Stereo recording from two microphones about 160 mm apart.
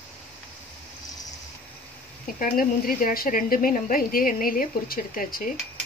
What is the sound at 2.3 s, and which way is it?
Speech, 60° left (ahead or behind).